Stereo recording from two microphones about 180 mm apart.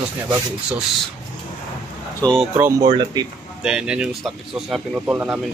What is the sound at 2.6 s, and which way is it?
Speech, 15° right (ahead or behind).